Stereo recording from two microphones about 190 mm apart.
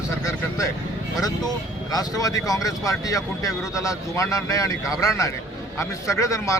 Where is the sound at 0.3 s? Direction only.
15° left (ahead or behind).